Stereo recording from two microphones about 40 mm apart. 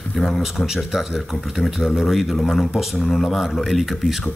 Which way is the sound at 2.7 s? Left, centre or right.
Centre.